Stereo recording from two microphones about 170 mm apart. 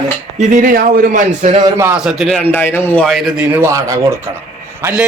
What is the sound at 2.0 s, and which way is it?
Speech, 5° right (ahead or behind).